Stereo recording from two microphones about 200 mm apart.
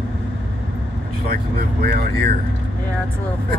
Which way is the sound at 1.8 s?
50° right (ahead or behind).